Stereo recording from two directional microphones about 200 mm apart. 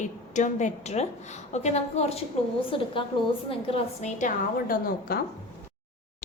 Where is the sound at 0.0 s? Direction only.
40° left (ahead or behind).